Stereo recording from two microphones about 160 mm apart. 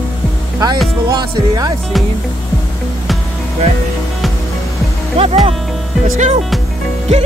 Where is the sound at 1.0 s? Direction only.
25° right (ahead or behind).